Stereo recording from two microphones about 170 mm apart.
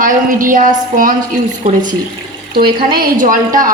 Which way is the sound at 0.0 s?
50° right (ahead or behind).